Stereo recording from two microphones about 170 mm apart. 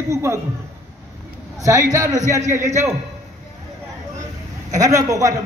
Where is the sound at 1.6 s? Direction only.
20° right (ahead or behind).